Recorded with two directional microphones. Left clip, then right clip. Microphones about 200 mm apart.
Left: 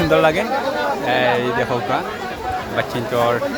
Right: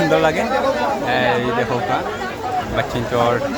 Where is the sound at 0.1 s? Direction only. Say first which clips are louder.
Left 1 dB; 10° left (ahead or behind).